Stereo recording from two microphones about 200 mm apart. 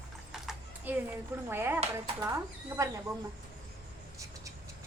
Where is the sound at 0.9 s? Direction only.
10° right (ahead or behind).